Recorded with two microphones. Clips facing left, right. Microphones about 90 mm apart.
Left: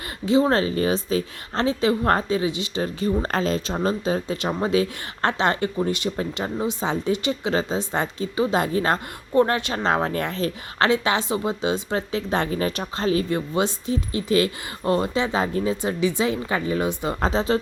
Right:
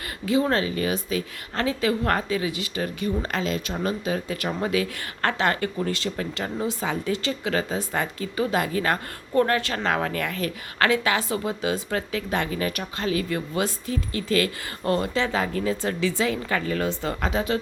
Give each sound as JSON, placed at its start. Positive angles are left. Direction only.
{"t": 0.3, "sound": "a woman's voice", "side_deg": 25}
{"t": 17.2, "sound": "speech", "side_deg": 30}